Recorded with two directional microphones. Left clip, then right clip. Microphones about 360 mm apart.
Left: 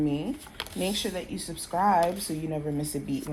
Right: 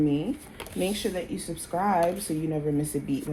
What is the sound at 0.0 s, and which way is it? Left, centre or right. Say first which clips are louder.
Speech: right 3 dB; left.